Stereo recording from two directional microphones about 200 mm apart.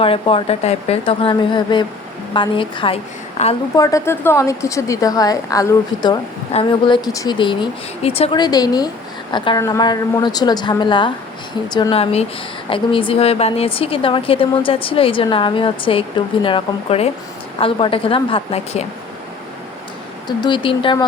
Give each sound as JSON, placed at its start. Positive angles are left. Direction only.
{"t": 0.0, "sound": "a woman's voice", "side_deg": 25}
{"t": 3.8, "sound": "a woman's voice", "side_deg": 15}
{"t": 20.2, "sound": "a woman's voice", "side_deg": 20}